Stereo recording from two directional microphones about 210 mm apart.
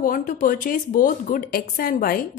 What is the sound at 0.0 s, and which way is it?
A woman's voice, 40° left (ahead or behind).